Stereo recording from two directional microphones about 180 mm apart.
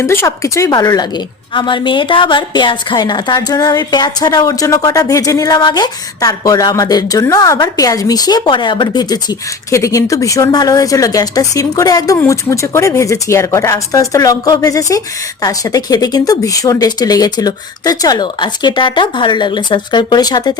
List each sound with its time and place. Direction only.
0.0 s speech: 15° left (ahead or behind)